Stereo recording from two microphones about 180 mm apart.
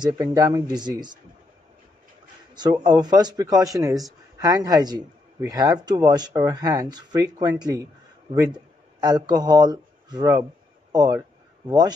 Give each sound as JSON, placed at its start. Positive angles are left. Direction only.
{"t": 0.0, "sound": "speech", "side_deg": -20}
{"t": 2.5, "sound": "speech", "side_deg": -25}
{"t": 10.9, "sound": "a sound", "side_deg": -20}